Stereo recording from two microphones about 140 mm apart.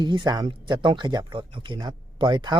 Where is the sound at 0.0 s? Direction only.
35° right (ahead or behind).